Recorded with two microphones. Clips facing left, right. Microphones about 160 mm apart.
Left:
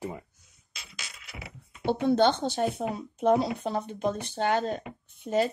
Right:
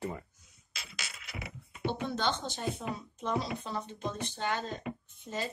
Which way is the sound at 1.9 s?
60° left (ahead or behind).